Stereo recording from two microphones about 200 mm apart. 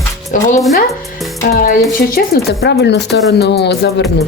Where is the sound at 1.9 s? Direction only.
50° left (ahead or behind).